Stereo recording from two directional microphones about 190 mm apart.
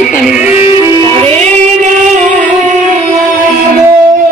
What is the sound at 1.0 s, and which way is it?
Music, 30° right (ahead or behind).